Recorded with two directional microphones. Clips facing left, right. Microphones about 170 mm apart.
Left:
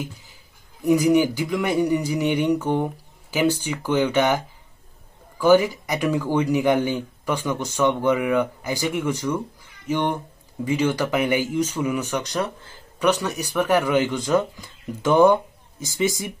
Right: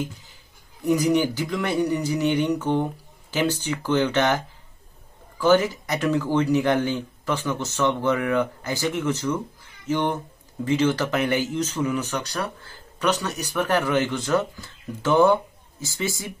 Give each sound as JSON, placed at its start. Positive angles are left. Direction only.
{"t": 0.0, "sound": "a sound", "side_deg": 10}
{"t": 0.8, "sound": "speech", "side_deg": 10}
{"t": 5.4, "sound": "speech", "side_deg": 10}